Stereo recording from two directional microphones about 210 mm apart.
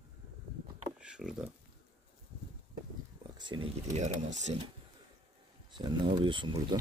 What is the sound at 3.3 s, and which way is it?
Speech, 25° right (ahead or behind).